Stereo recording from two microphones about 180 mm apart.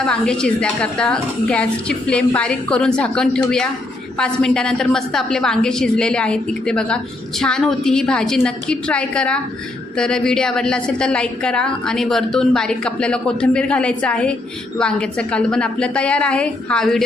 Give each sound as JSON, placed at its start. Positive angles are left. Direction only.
{"t": 0.0, "sound": "a woman's voice", "side_deg": 5}